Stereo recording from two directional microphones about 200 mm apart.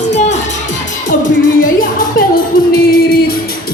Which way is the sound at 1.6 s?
45° left (ahead or behind).